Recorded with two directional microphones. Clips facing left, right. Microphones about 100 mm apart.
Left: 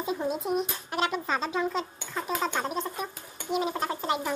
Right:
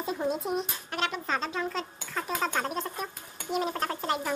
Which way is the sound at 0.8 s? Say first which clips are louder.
Left 3 dB; 10° left (ahead or behind).